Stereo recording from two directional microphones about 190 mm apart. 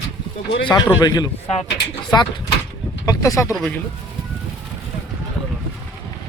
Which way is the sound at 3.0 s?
15° left (ahead or behind).